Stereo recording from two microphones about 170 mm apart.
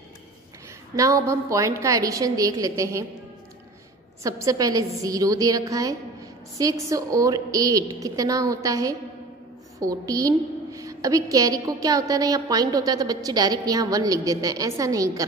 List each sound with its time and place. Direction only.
0.9 s a woman's voice: 20° right (ahead or behind)
4.2 s a woman's voice: 20° right (ahead or behind)